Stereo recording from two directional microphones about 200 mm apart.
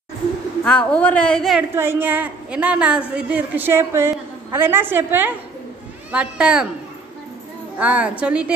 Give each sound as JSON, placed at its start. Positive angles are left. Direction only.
{"t": 0.7, "sound": "a woman's voice", "side_deg": 5}
{"t": 1.8, "sound": "a woman's voice", "side_deg": -10}
{"t": 7.8, "sound": "a woman's voice", "side_deg": -5}